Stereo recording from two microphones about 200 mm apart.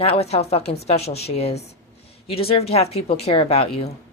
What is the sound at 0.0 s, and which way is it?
A woman's voice, 30° left (ahead or behind).